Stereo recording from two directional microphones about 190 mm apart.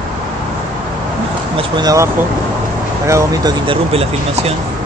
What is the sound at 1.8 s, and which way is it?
Speech, 15° right (ahead or behind).